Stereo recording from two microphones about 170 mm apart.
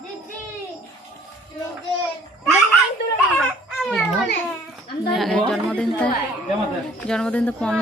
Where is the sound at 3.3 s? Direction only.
5° left (ahead or behind).